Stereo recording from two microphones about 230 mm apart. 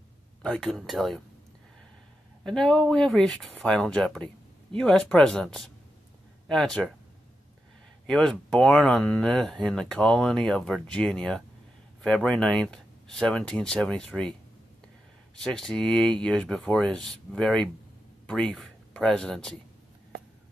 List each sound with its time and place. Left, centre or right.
0.4 s speech: centre
2.4 s speech: centre
8.1 s speech: centre
15.3 s speech: centre